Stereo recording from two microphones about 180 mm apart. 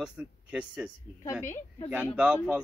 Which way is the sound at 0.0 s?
5° right (ahead or behind).